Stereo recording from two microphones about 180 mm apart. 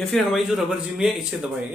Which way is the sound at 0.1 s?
Centre (ahead or behind).